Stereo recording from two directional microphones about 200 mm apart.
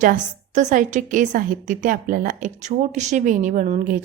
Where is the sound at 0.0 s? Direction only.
40° right (ahead or behind).